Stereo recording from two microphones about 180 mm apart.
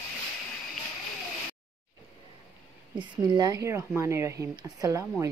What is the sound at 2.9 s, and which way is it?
Speech, 25° right (ahead or behind).